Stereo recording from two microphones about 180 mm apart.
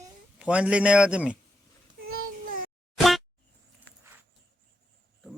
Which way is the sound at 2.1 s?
50° right (ahead or behind).